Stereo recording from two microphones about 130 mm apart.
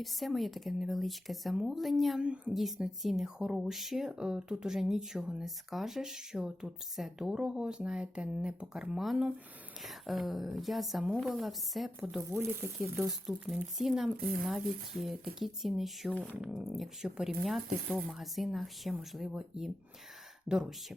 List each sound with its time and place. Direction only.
0.0 s speech: centre (ahead or behind)
12.0 s speech: 15° right (ahead or behind)
13.3 s speech: 5° right (ahead or behind)